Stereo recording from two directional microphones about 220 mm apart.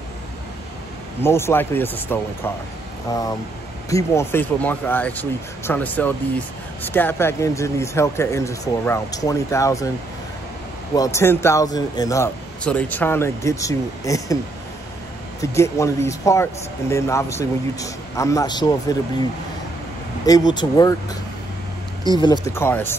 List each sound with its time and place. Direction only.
1.2 s a man's voice: 10° left (ahead or behind)
11.0 s a man's voice: 15° left (ahead or behind)
15.4 s a man's voice: 15° left (ahead or behind)
20.2 s a man's voice: 20° left (ahead or behind)